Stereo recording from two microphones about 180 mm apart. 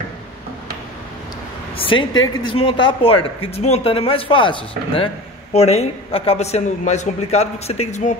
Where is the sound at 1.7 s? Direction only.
30° left (ahead or behind).